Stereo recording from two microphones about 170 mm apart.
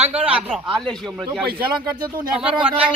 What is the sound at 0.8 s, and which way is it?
Speech, centre (ahead or behind).